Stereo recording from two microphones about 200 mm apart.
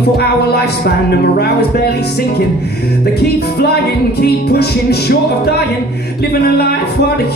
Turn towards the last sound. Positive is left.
turn(degrees=55)  # may be behind; listen again after turning